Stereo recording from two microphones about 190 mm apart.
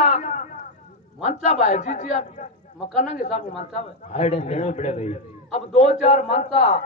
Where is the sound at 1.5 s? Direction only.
35° left (ahead or behind).